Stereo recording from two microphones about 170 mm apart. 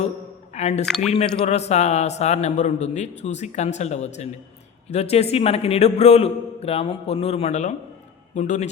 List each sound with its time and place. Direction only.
0.5 s speech: 40° left (ahead or behind)
0.9 s speech: 5° left (ahead or behind)
1.1 s a man's voice: 35° left (ahead or behind)